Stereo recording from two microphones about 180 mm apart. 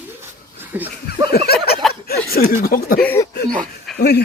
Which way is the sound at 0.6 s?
10° right (ahead or behind).